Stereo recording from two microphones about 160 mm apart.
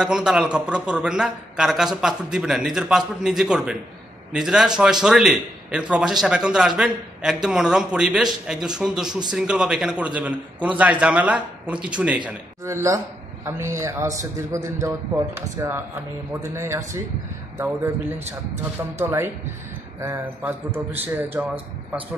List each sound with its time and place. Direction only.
0.0 s a man's voice: 5° right (ahead or behind)
18.9 s a man's voice: 15° right (ahead or behind)